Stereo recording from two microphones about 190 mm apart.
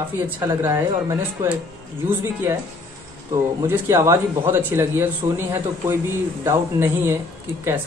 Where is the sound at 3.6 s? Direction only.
10° right (ahead or behind).